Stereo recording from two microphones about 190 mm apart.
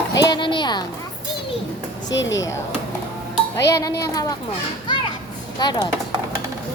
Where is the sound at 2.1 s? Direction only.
70° left (ahead or behind).